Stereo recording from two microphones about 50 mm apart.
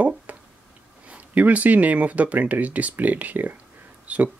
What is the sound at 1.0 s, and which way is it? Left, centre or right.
Speech, right.